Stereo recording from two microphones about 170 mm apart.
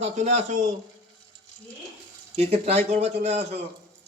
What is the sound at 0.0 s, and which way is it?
Speech, 40° right (ahead or behind).